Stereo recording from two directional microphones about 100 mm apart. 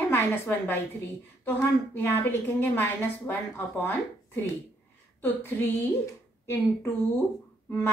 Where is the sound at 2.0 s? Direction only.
25° left (ahead or behind).